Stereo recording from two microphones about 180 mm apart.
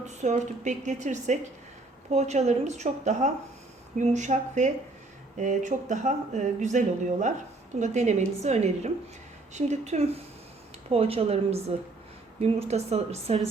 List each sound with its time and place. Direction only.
0.0 s a woman's voice: 40° right (ahead or behind)